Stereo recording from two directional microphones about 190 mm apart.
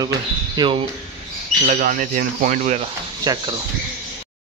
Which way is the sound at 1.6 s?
45° right (ahead or behind).